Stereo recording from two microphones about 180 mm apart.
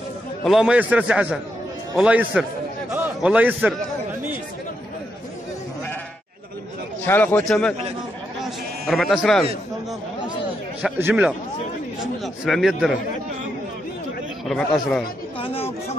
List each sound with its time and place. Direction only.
0.5 s a man's voice: 5° right (ahead or behind)
7.1 s a man's voice: 10° left (ahead or behind)
8.4 s bleat: centre (ahead or behind)
10.8 s speech: 10° right (ahead or behind)
12.0 s a sound: centre (ahead or behind)
14.4 s a man's voice: 5° left (ahead or behind)
15.3 s chatter: 30° left (ahead or behind)